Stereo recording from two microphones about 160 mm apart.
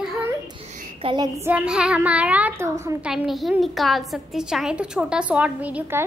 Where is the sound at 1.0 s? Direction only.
30° right (ahead or behind).